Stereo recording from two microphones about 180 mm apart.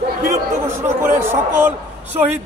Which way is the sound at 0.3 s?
15° right (ahead or behind).